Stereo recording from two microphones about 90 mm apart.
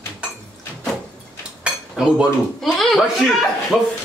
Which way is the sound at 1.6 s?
10° right (ahead or behind).